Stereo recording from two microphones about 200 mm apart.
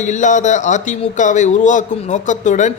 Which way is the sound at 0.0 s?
35° left (ahead or behind).